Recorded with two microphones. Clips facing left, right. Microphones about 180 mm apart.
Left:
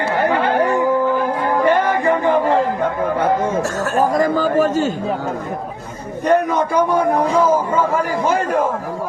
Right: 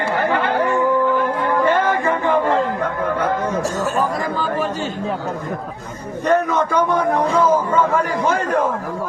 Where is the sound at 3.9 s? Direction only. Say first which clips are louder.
Left 5 dB; 40° left (ahead or behind).